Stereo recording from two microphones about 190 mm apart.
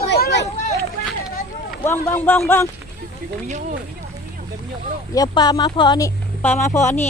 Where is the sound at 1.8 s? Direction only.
15° left (ahead or behind).